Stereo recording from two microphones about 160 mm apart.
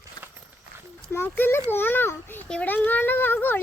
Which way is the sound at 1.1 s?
15° left (ahead or behind).